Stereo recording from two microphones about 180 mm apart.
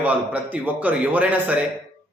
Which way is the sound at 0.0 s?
10° right (ahead or behind).